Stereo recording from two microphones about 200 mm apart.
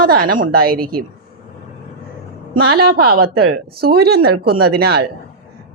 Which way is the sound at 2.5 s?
50° right (ahead or behind).